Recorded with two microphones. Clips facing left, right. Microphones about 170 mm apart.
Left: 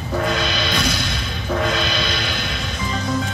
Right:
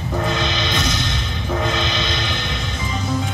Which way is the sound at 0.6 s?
20° right (ahead or behind).